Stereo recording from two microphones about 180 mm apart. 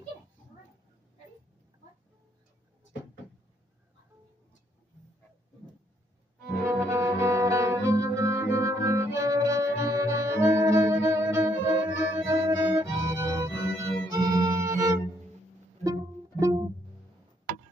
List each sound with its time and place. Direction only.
6.6 s music: 10° right (ahead or behind)
15.8 s pizzicato: 15° right (ahead or behind)